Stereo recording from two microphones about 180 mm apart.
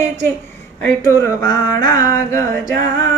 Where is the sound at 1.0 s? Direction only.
15° left (ahead or behind).